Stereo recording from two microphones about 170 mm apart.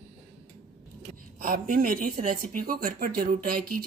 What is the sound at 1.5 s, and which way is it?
Speech, 50° right (ahead or behind).